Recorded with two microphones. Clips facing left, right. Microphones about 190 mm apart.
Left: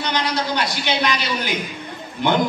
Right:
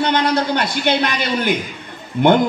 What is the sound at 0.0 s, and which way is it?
A man's voice, 55° right (ahead or behind).